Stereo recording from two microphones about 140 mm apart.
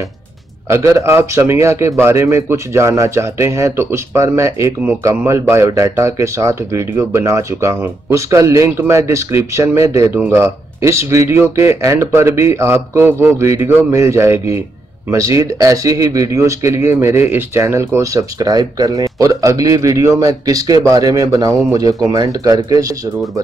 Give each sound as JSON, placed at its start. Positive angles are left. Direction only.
{"t": 0.7, "sound": "a man's voice", "side_deg": -20}